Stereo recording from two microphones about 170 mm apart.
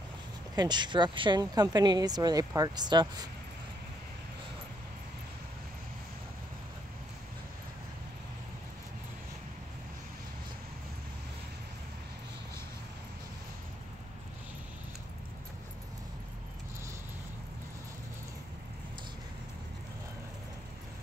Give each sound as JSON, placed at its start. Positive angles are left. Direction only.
{"t": 0.6, "sound": "speech", "side_deg": -25}